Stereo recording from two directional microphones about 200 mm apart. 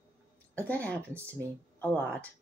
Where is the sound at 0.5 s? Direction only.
10° left (ahead or behind).